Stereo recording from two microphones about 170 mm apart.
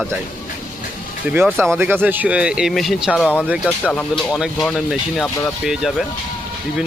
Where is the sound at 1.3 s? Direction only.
15° right (ahead or behind); by 3.4 s 5° left (ahead or behind).